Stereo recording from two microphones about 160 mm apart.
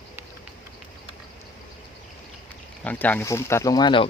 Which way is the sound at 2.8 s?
10° left (ahead or behind).